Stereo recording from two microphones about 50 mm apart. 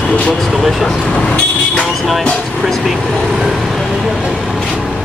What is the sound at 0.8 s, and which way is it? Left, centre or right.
Speech, centre.